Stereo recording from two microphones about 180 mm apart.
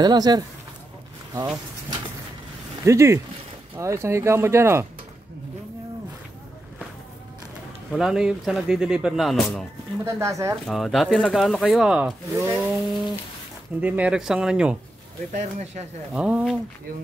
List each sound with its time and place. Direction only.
0.0 s speech: 20° right (ahead or behind)
7.9 s speech: 5° right (ahead or behind)
10.1 s speech: 15° right (ahead or behind)
10.7 s speech: centre (ahead or behind)
15.3 s speech: 40° right (ahead or behind)
16.1 s speech: 5° right (ahead or behind)